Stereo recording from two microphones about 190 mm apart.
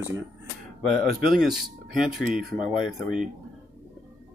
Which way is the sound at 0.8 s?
Centre (ahead or behind).